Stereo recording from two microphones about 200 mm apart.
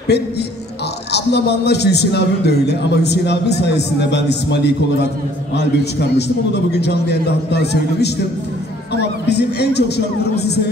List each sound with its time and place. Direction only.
0.1 s a man's voice: 55° left (ahead or behind)
9.3 s a man's voice: 55° left (ahead or behind)